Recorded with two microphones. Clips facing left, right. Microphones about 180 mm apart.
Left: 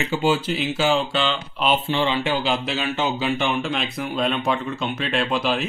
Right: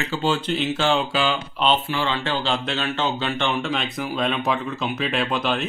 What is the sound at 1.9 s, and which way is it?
A man's voice, 15° left (ahead or behind).